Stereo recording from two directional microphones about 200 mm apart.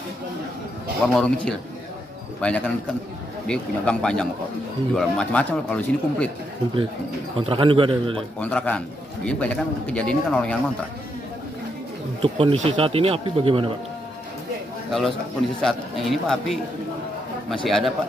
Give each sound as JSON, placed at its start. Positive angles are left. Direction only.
{"t": 1.0, "sound": "a man's voice", "side_deg": 5}
{"t": 7.3, "sound": "speech", "side_deg": -25}
{"t": 8.4, "sound": "a man's voice", "side_deg": 5}
{"t": 12.2, "sound": "speech", "side_deg": -25}
{"t": 14.9, "sound": "a man's voice", "side_deg": 0}
{"t": 17.6, "sound": "a man's voice", "side_deg": 0}